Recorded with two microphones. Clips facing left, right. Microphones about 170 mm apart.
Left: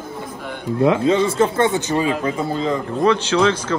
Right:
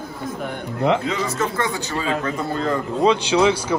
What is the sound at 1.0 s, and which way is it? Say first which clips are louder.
Speech: left 7 dB; 30° left (ahead or behind).